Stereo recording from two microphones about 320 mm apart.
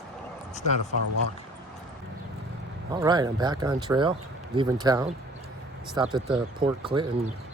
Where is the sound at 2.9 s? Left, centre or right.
Centre.